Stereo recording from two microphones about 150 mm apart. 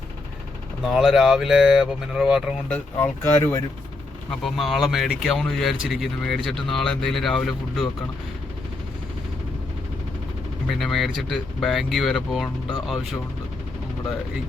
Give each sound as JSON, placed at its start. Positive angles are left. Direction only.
{"t": 0.9, "sound": "speech", "side_deg": 0}
{"t": 2.6, "sound": "speech", "side_deg": 15}
{"t": 4.3, "sound": "speech", "side_deg": 0}
{"t": 10.7, "sound": "speech", "side_deg": 0}